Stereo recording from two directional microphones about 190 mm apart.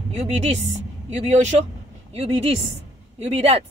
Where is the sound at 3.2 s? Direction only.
35° right (ahead or behind).